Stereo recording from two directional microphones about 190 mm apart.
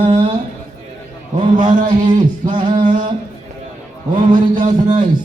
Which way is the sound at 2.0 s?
25° right (ahead or behind).